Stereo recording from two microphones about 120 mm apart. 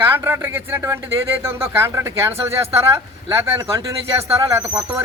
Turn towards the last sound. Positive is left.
turn(degrees=-20)  # may be behind; listen again after turning